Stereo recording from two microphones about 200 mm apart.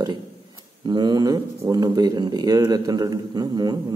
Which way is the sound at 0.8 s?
20° right (ahead or behind).